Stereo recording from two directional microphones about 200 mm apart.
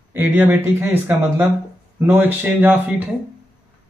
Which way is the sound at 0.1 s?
10° right (ahead or behind).